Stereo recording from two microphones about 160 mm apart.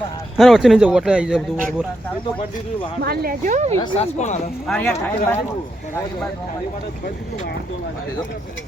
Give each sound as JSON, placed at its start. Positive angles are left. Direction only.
{"t": 0.3, "sound": "speech", "side_deg": 0}
{"t": 3.0, "sound": "speech", "side_deg": -75}
{"t": 3.9, "sound": "speech", "side_deg": 45}
{"t": 4.9, "sound": "speech", "side_deg": 15}